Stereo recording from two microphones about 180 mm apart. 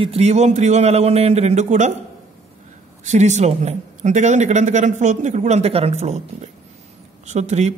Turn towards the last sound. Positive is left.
turn(degrees=-40)  # may be behind; listen again after turning